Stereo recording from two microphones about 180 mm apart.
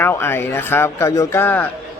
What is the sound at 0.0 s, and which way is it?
A man's voice, 10° left (ahead or behind).